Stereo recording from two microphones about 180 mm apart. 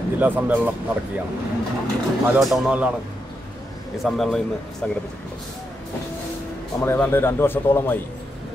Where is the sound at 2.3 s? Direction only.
Centre (ahead or behind).